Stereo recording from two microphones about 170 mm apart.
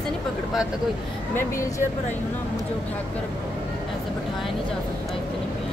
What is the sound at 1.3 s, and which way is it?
Speech, 15° left (ahead or behind).